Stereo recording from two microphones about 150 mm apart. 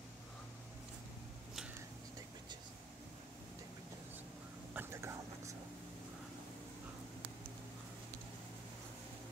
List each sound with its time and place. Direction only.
4.7 s whispering: 20° right (ahead or behind)